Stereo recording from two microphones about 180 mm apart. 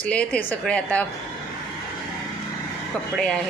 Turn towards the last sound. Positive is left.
turn(degrees=5)  # may be behind; listen again after turning